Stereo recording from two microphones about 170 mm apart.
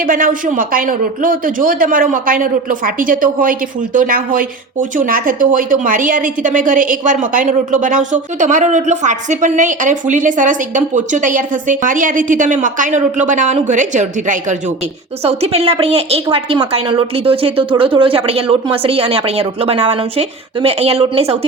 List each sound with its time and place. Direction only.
0.0 s a man's voice: 55° right (ahead or behind); by 21.3 s 35° right (ahead or behind)